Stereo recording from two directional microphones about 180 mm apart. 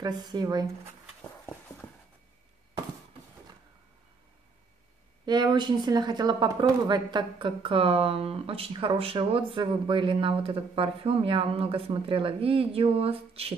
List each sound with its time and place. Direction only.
0.3 s speech: 20° right (ahead or behind)
5.2 s speech: 25° right (ahead or behind)